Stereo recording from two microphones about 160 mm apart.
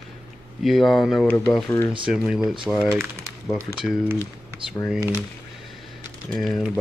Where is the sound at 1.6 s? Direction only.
15° left (ahead or behind).